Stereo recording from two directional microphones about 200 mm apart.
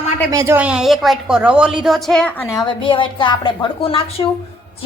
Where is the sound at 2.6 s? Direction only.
25° left (ahead or behind).